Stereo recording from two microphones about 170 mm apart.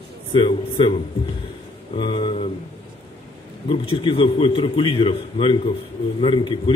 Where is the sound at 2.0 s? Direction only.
30° left (ahead or behind).